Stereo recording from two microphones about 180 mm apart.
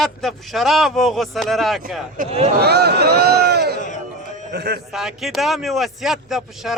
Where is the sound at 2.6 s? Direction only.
65° right (ahead or behind).